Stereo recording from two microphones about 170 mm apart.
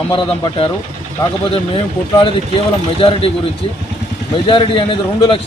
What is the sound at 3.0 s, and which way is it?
Speech, 35° left (ahead or behind).